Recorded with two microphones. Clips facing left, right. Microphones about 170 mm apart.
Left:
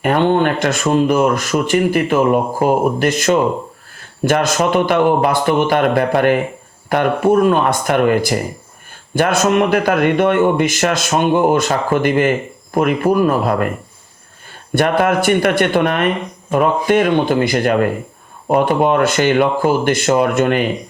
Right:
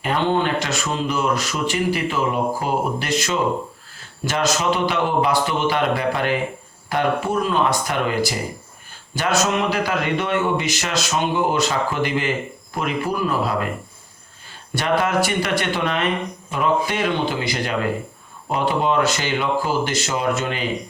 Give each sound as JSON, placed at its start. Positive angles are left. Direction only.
{"t": 0.0, "sound": "speech", "side_deg": 55}
{"t": 14.8, "sound": "speech", "side_deg": 55}